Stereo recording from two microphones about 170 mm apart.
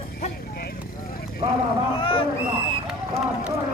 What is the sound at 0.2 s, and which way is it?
Vehicle, 60° left (ahead or behind).